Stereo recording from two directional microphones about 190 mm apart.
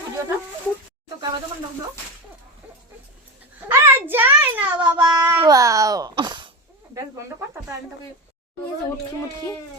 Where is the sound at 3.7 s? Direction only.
10° right (ahead or behind).